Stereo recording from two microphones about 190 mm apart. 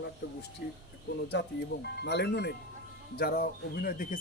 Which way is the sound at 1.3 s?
60° left (ahead or behind).